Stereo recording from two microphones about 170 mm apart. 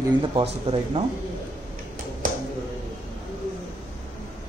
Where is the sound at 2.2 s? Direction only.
50° right (ahead or behind).